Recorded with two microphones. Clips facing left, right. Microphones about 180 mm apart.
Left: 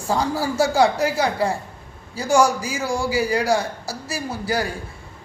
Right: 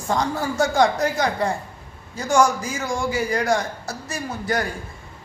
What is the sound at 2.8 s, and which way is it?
A man's voice, 35° left (ahead or behind).